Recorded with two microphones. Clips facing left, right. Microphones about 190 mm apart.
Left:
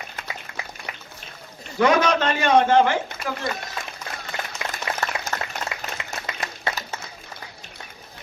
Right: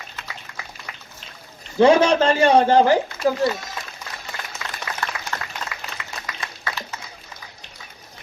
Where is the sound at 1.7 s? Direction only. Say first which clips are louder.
Right 5 dB; 30° right (ahead or behind).